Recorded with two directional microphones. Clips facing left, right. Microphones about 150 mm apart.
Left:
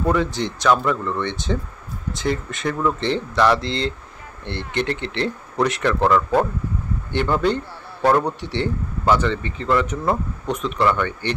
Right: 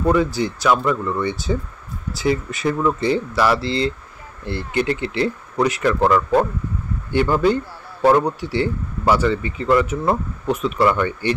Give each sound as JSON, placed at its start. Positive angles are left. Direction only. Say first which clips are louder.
{"t": 0.1, "sound": "speech", "louder": "right 3 dB", "side_deg": -5}